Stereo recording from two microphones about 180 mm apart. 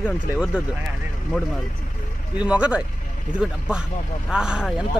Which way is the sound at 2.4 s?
5° right (ahead or behind).